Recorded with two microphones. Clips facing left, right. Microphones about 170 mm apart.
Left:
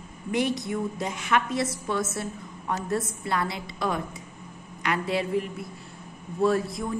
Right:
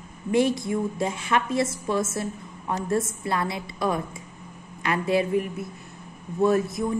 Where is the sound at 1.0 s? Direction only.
25° right (ahead or behind).